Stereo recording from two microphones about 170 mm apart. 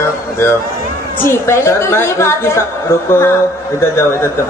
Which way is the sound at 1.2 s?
15° left (ahead or behind).